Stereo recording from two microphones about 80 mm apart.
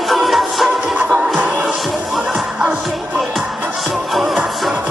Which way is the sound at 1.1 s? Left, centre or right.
Centre.